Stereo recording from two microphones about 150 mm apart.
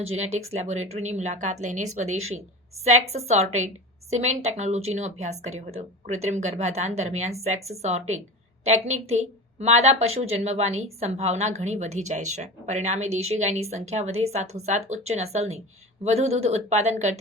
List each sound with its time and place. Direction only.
0.0 s a woman's voice: 45° right (ahead or behind)